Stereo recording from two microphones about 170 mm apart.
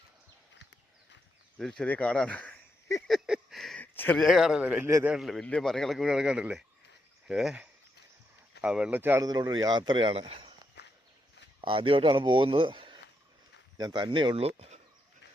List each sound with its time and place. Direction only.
1.5 s speech: 5° left (ahead or behind)
3.1 s a sound: centre (ahead or behind)
3.9 s speech: 10° left (ahead or behind)
4.3 s a man's voice: 5° right (ahead or behind)
9.3 s speech: 25° right (ahead or behind)
10.8 s walk: 75° left (ahead or behind)
11.6 s speech: 30° right (ahead or behind)